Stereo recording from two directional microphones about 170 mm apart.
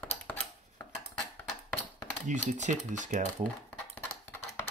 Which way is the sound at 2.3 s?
45° right (ahead or behind).